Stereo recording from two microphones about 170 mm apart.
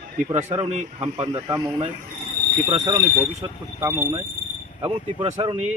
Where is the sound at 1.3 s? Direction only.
20° right (ahead or behind).